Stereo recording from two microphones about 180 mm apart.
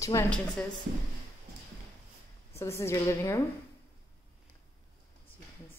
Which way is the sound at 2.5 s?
15° left (ahead or behind).